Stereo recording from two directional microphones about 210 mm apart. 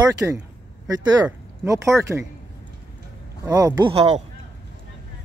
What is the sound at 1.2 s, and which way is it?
Speech, 15° right (ahead or behind).